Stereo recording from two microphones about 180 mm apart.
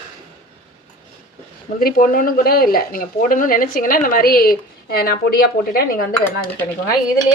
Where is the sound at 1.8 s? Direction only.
55° left (ahead or behind).